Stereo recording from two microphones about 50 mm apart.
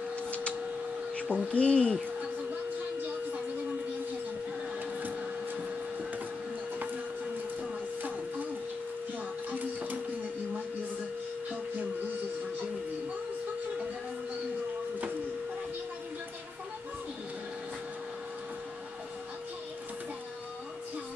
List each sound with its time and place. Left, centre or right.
0.3 s a sound: left
1.2 s speech: right
1.5 s speech: left
9.5 s music: right